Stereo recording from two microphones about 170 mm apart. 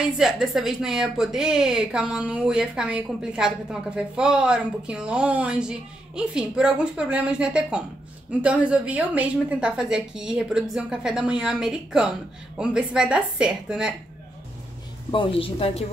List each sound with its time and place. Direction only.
0.2 s a woman's voice: centre (ahead or behind)
15.0 s speech: 30° left (ahead or behind)